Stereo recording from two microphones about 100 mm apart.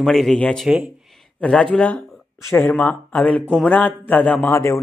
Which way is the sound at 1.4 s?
5° left (ahead or behind).